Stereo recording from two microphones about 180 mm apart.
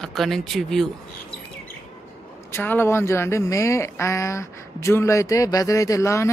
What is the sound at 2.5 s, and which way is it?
Speech, 10° left (ahead or behind).